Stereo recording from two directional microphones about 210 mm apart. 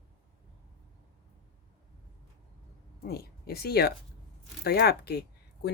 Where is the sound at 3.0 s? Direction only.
50° left (ahead or behind).